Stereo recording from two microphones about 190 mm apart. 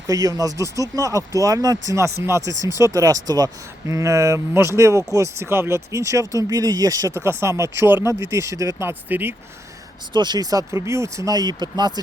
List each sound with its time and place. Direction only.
0.1 s speech: 20° right (ahead or behind)
10.1 s speech: 25° right (ahead or behind)